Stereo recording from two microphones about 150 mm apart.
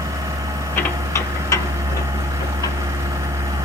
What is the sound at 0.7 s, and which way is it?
Tick-tock, 20° left (ahead or behind).